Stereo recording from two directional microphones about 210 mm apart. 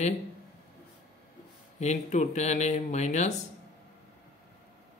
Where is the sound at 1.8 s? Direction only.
35° left (ahead or behind).